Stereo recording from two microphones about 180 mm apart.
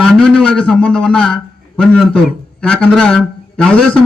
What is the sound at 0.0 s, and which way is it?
A man's voice, 5° left (ahead or behind).